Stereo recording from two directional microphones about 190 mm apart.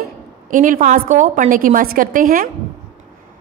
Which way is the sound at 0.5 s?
45° right (ahead or behind).